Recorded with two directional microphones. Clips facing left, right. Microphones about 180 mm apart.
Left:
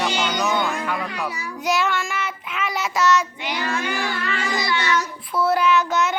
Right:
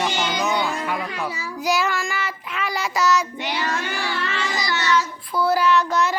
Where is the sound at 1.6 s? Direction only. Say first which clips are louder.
Even; centre (ahead or behind).